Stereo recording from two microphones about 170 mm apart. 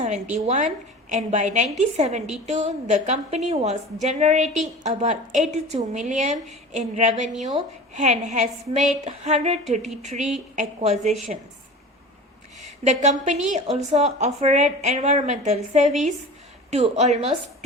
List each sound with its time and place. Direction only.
0.0 s a woman's voice: 45° right (ahead or behind)
12.8 s a woman's voice: 45° right (ahead or behind)